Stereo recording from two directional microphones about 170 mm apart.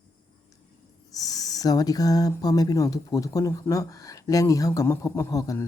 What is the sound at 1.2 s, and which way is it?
Speech, 20° left (ahead or behind).